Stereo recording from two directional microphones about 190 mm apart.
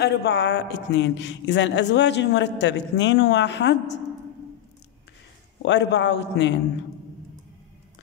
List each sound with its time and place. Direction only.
0.0 s speech: 60° left (ahead or behind)
5.6 s speech: 65° left (ahead or behind)